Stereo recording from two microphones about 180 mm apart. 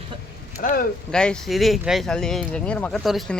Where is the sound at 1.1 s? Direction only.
5° left (ahead or behind).